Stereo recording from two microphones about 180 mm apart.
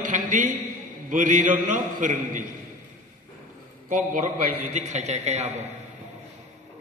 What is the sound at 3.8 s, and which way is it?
A man's voice, 45° right (ahead or behind).